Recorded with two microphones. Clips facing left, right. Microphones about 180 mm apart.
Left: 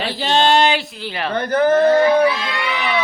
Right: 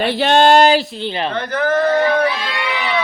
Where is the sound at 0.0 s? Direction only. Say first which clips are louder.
Right 5 dB; 60° right (ahead or behind); by 0.9 s 35° right (ahead or behind).